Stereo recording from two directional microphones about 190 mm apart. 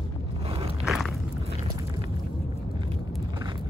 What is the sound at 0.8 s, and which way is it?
Walk, centre (ahead or behind).